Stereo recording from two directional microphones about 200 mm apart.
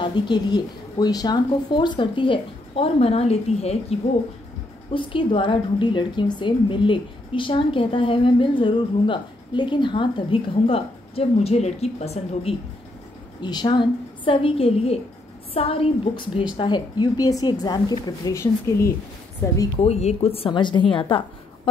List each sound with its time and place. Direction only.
0.0 s a woman's voice: 25° left (ahead or behind)
13.4 s a woman's voice: 20° left (ahead or behind)
19.8 s a woman's voice: 35° left (ahead or behind)